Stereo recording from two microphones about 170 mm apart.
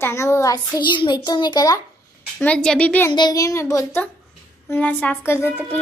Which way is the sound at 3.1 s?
25° left (ahead or behind).